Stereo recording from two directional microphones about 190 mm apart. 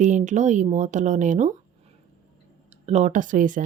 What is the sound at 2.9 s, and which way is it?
Speech, 40° right (ahead or behind).